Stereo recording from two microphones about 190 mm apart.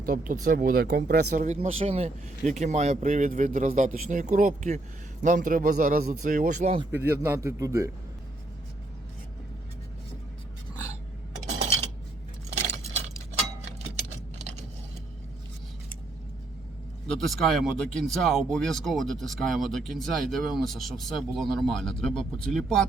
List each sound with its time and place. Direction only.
0.0 s a man's voice: 50° right (ahead or behind)
1.5 s a man's voice: 30° right (ahead or behind)
6.9 s a man's voice: 10° right (ahead or behind)
17.1 s speech: centre (ahead or behind)